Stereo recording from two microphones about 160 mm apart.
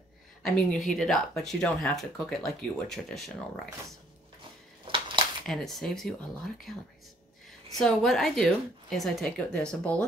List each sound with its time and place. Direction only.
0.4 s speech: centre (ahead or behind)
4.8 s a sound: 30° right (ahead or behind)
5.5 s speech: 5° left (ahead or behind)
7.8 s speech: centre (ahead or behind)